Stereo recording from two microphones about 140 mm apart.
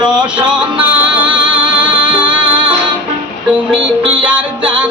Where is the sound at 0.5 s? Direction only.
10° right (ahead or behind).